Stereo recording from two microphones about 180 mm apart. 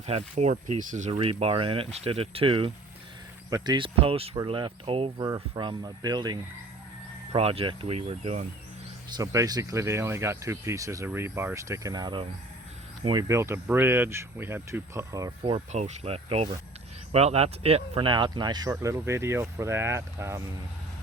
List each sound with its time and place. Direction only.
0.0 s speech: 35° right (ahead or behind)
1.2 s speech: 30° right (ahead or behind)
9.0 s speech: 20° right (ahead or behind)
15.7 s speech: 35° right (ahead or behind); by 20.4 s 15° right (ahead or behind)